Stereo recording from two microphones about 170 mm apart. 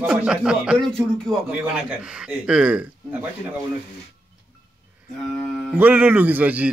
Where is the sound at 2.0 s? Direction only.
5° right (ahead or behind).